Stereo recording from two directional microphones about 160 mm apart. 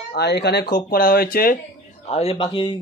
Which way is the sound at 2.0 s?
40° left (ahead or behind).